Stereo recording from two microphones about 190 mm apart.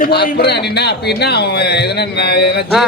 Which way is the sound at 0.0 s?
55° left (ahead or behind).